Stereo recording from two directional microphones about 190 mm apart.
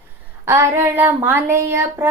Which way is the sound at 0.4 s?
15° right (ahead or behind).